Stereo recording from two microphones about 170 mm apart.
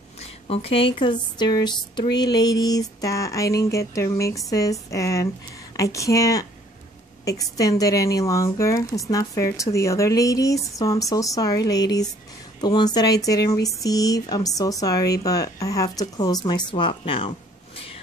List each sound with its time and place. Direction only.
0.2 s a woman's voice: 35° left (ahead or behind)